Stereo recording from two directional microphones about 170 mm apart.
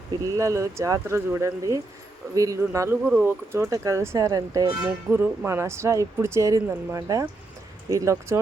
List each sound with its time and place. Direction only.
0.3 s speech: 20° right (ahead or behind)
5.1 s speech: 10° right (ahead or behind)